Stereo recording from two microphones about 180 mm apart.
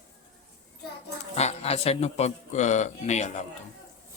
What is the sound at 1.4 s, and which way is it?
Speech, 35° left (ahead or behind).